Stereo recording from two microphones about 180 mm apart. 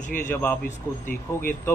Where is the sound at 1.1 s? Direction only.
50° left (ahead or behind).